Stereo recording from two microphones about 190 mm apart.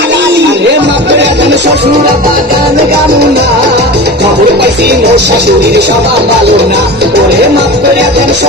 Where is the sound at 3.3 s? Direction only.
60° right (ahead or behind).